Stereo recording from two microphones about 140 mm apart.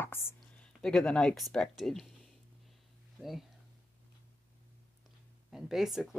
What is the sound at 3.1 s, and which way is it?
Speech, centre (ahead or behind).